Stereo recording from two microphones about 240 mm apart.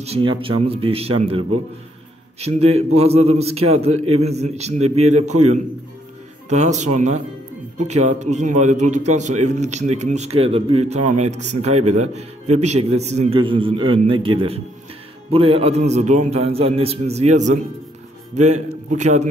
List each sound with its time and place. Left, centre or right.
0.0 s a man's voice: right